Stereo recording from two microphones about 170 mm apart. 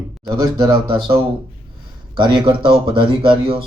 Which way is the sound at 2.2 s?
30° right (ahead or behind).